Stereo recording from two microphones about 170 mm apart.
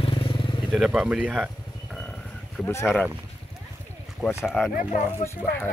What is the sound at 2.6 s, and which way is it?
Speech, 15° left (ahead or behind).